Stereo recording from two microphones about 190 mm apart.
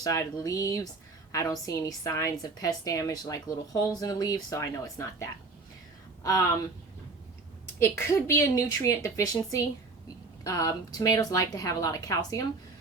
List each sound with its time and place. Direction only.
0.0 s a woman's voice: 20° left (ahead or behind)
7.8 s a woman's voice: 15° left (ahead or behind)